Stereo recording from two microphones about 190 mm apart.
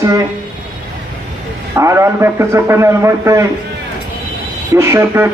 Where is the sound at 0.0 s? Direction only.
15° right (ahead or behind).